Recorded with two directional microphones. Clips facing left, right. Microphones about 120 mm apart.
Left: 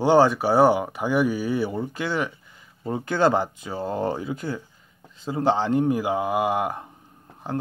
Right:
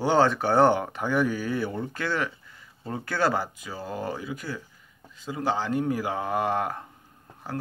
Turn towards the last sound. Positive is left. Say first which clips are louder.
# left 5 dB
turn(degrees=20)  # may be behind; listen again after turning